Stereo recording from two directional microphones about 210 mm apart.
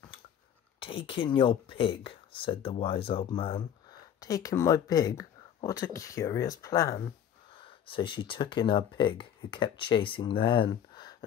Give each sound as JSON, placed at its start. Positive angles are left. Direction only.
{"t": 0.7, "sound": "speech", "side_deg": 25}